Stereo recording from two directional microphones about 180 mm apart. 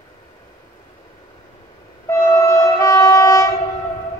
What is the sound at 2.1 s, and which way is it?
Train, 15° left (ahead or behind).